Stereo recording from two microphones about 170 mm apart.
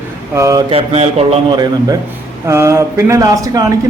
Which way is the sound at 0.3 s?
20° right (ahead or behind).